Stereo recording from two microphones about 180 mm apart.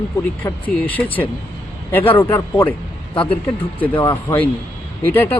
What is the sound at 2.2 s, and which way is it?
Speech, 10° left (ahead or behind).